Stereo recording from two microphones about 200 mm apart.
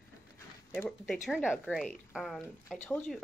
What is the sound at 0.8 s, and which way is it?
Speech, centre (ahead or behind).